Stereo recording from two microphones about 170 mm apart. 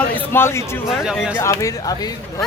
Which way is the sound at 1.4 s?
20° left (ahead or behind).